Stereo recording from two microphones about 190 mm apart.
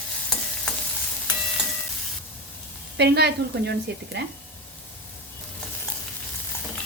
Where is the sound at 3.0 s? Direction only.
60° right (ahead or behind).